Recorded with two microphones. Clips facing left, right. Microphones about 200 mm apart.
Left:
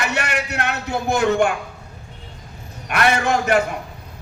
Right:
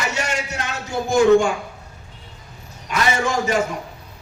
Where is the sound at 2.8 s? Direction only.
60° left (ahead or behind).